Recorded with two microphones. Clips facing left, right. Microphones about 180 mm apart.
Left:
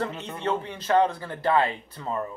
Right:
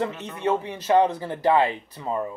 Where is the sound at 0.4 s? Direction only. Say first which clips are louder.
Right 4 dB; 15° right (ahead or behind).